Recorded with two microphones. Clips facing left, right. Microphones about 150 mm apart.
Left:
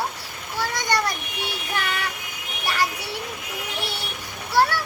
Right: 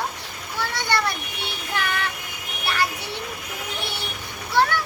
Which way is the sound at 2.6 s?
10° left (ahead or behind).